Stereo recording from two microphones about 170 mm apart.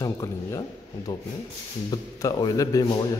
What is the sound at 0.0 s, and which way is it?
A man's voice, 20° left (ahead or behind).